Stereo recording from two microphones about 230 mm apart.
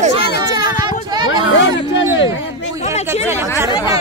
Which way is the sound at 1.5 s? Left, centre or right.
Left.